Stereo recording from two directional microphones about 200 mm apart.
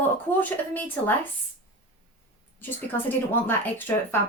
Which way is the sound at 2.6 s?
10° left (ahead or behind).